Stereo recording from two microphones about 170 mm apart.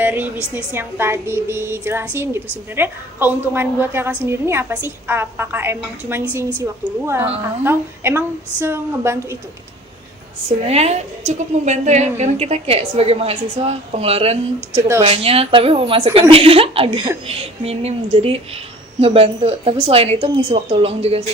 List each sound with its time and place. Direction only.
0.0 s a sound: 10° right (ahead or behind)
0.5 s a woman's voice: 15° right (ahead or behind)
10.7 s a woman's voice: 40° right (ahead or behind)